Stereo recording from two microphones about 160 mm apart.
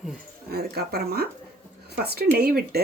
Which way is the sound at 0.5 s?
80° right.